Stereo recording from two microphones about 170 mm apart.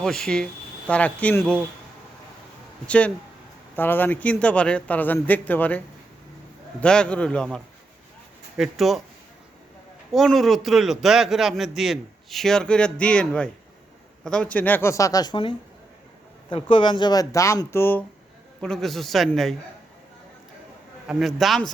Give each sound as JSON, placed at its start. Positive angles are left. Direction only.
{"t": 0.0, "sound": "a man's voice", "side_deg": 5}
{"t": 2.8, "sound": "a man's voice", "side_deg": 5}
{"t": 6.8, "sound": "a man's voice", "side_deg": 5}
{"t": 10.1, "sound": "a man's voice", "side_deg": 0}
{"t": 18.6, "sound": "a man's voice", "side_deg": 5}
{"t": 21.1, "sound": "a man's voice", "side_deg": 0}